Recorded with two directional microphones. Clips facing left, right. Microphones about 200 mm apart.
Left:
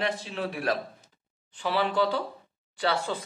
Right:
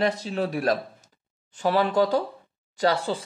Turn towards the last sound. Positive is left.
turn(degrees=-35)  # may be behind; listen again after turning